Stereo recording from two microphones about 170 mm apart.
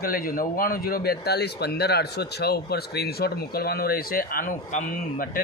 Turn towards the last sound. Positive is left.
turn(degrees=55)  # may be behind; listen again after turning